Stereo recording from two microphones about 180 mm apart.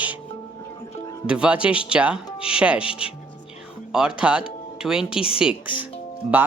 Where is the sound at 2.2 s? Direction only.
30° left (ahead or behind).